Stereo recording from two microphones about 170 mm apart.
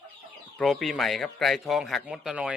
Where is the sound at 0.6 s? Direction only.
Centre (ahead or behind).